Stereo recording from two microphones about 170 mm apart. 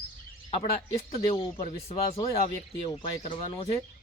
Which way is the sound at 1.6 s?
35° left (ahead or behind).